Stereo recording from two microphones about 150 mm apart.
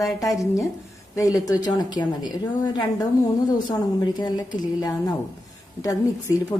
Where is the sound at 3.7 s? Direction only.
30° left (ahead or behind).